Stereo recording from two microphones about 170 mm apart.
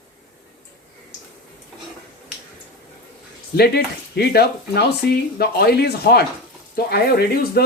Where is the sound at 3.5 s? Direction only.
75° left (ahead or behind).